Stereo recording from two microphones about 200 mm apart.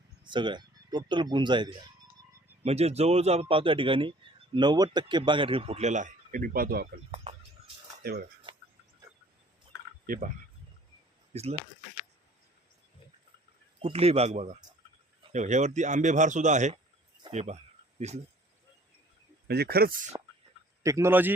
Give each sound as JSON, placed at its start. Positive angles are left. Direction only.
{"t": 0.3, "sound": "a man's voice", "side_deg": -25}
{"t": 8.0, "sound": "speech", "side_deg": -50}
{"t": 8.5, "sound": "a sound", "side_deg": -25}
{"t": 10.1, "sound": "speech", "side_deg": -45}
{"t": 11.3, "sound": "speech", "side_deg": -30}
{"t": 13.8, "sound": "speech", "side_deg": -30}
{"t": 19.5, "sound": "speech", "side_deg": -50}
{"t": 20.8, "sound": "a man's voice", "side_deg": -15}